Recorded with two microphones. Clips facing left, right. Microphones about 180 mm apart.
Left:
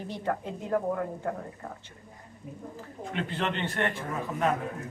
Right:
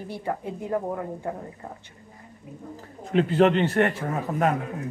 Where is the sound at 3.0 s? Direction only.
40° right (ahead or behind).